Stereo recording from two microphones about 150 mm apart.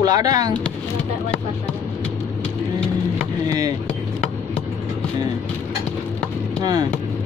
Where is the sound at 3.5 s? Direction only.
25° right (ahead or behind).